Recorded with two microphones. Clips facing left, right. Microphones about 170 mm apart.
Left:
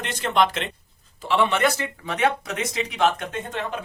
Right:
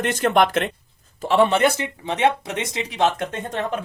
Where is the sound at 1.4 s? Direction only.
30° right (ahead or behind).